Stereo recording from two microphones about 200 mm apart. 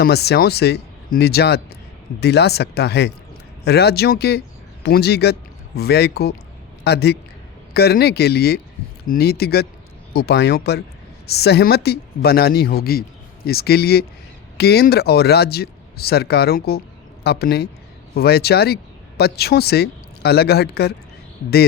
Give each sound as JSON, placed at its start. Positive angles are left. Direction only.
{"t": 0.0, "sound": "speech", "side_deg": 55}